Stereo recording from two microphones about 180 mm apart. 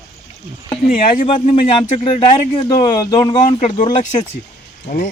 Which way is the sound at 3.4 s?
40° left (ahead or behind).